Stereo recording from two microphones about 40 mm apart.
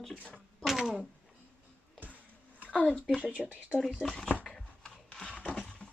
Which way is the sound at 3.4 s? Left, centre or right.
Right.